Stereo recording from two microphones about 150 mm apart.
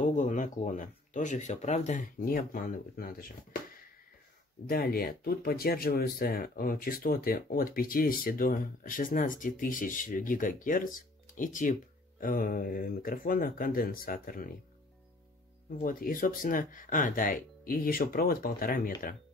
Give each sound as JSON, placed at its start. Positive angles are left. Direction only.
{"t": 0.0, "sound": "speech", "side_deg": 60}
{"t": 15.7, "sound": "speech", "side_deg": 70}